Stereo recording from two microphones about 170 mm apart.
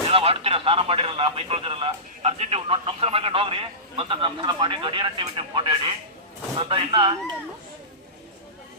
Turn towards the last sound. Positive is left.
turn(degrees=-30)  # may be behind; listen again after turning